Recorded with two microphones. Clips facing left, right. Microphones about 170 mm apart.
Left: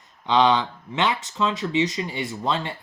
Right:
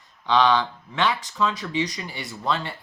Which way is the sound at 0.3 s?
20° left (ahead or behind).